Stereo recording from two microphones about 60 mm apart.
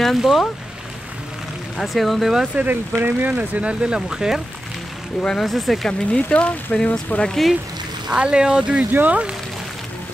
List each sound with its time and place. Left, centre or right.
0.0 s speech: centre
1.8 s speech: centre
2.5 s speech: right; by 4.4 s centre
5.4 s speech: centre
5.9 s speech: centre
8.1 s speech: centre
8.9 s speech: right